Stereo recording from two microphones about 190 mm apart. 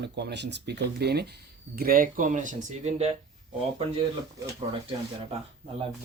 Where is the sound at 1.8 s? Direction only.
50° right (ahead or behind).